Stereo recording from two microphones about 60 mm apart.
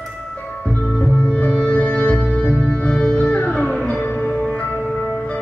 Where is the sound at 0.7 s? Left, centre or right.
Centre.